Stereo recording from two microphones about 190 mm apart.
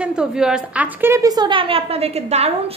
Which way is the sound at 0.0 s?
5° right (ahead or behind).